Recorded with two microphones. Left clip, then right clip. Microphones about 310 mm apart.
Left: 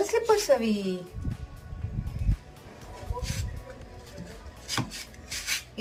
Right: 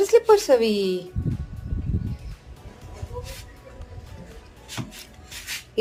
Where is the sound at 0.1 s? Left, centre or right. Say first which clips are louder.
Right 7 dB; centre.